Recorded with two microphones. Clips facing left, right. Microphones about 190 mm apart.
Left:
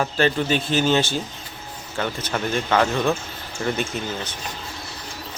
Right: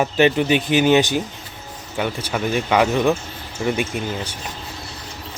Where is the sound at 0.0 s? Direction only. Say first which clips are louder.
Right 4 dB; 15° right (ahead or behind).